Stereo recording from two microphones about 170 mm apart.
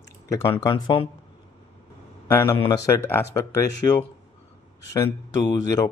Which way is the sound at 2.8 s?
15° left (ahead or behind).